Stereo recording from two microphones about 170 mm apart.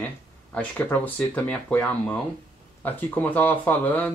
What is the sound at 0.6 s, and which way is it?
Speech, 10° left (ahead or behind).